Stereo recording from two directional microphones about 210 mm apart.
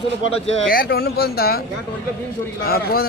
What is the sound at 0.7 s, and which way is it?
Speech, 45° left (ahead or behind).